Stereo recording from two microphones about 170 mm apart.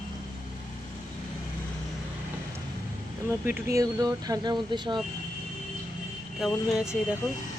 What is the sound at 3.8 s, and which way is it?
Speech, 20° right (ahead or behind).